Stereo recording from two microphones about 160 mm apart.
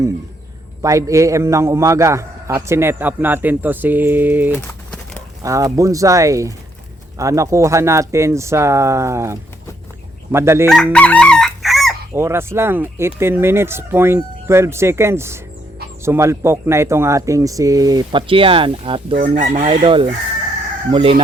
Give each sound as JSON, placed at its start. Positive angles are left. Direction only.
{"t": 0.8, "sound": "a man's voice", "side_deg": -20}
{"t": 4.5, "sound": "crumpling", "side_deg": 10}
{"t": 5.4, "sound": "a man's voice", "side_deg": -20}
{"t": 10.7, "sound": "chicken", "side_deg": 5}
{"t": 12.1, "sound": "a man's voice", "side_deg": -15}
{"t": 19.1, "sound": "chicken", "side_deg": -50}